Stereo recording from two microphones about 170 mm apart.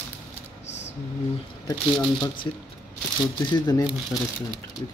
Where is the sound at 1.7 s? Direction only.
25° left (ahead or behind).